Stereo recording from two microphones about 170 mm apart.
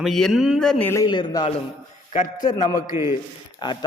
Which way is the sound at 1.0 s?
25° left (ahead or behind).